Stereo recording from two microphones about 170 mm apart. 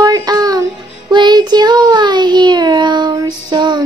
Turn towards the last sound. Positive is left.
turn(degrees=-25)  # may be behind; listen again after turning